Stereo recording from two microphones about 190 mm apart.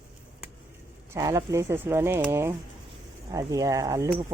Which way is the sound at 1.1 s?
15° right (ahead or behind).